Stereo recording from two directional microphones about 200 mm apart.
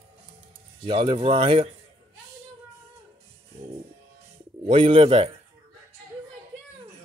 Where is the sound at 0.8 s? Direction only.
25° right (ahead or behind).